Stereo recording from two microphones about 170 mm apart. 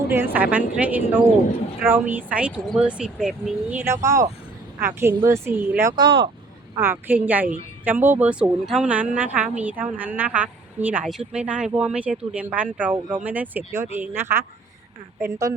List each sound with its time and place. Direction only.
0.1 s a woman's voice: 10° right (ahead or behind)
6.0 s speech: 30° right (ahead or behind)
6.7 s a woman's voice: 15° right (ahead or behind)